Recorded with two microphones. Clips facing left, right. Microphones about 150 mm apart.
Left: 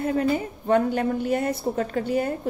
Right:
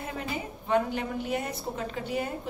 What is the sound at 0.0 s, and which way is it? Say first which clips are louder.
A woman's voice: left 11 dB; 45° left (ahead or behind).